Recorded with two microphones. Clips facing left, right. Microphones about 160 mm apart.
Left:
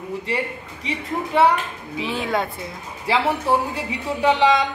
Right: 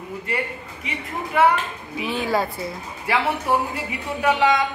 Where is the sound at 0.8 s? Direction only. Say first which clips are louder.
Left 4 dB; 30° left (ahead or behind).